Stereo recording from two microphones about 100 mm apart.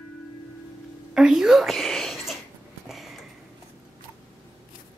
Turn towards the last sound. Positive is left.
turn(degrees=0)  # may be behind; listen again after turning